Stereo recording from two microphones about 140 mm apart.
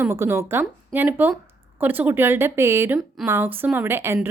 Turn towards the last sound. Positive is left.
turn(degrees=-15)  # may be behind; listen again after turning